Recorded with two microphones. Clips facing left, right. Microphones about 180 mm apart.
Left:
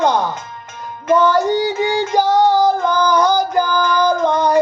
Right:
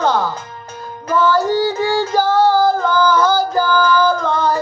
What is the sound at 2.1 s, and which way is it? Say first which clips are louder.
Female singing: left 1 dB; 20° left (ahead or behind).